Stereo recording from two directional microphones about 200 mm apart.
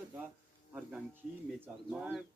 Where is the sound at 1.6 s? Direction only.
10° right (ahead or behind).